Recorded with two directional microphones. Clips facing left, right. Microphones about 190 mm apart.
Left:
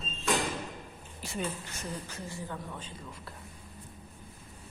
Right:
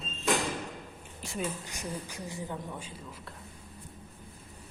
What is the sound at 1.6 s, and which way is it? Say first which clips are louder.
A man's voice: right 1 dB; 15° right (ahead or behind).